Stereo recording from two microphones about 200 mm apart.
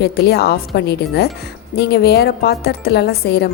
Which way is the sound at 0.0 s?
55° left (ahead or behind).